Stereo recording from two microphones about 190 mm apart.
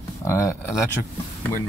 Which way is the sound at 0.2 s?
15° left (ahead or behind).